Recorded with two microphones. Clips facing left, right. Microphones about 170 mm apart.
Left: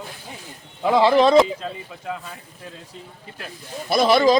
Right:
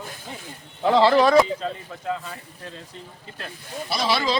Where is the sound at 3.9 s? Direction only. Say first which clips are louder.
Left 8 dB; 50° left (ahead or behind).